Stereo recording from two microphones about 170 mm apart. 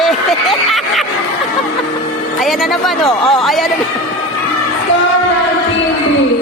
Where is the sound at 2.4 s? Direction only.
Centre (ahead or behind).